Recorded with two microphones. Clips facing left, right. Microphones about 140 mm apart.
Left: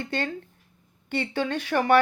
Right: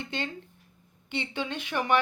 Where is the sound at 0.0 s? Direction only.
50° left (ahead or behind).